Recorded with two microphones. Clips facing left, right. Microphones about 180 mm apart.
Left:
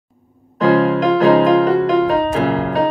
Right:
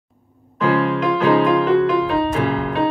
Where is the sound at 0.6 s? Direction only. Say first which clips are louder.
Left 4 dB; 40° left (ahead or behind).